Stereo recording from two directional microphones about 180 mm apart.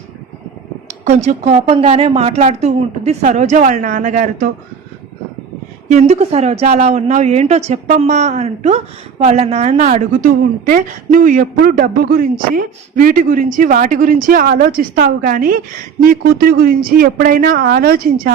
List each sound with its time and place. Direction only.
1.0 s speech: 40° right (ahead or behind)
5.9 s speech: 40° right (ahead or behind); by 18.1 s 55° right (ahead or behind)